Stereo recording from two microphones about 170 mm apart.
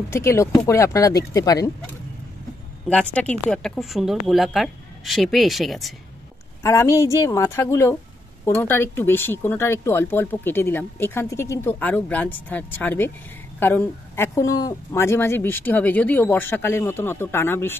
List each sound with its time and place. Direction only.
0.1 s speech: 15° left (ahead or behind)
2.9 s speech: 5° left (ahead or behind)
6.6 s speech: 15° left (ahead or behind)